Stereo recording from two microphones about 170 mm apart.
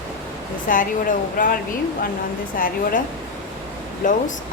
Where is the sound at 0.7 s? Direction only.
50° left (ahead or behind).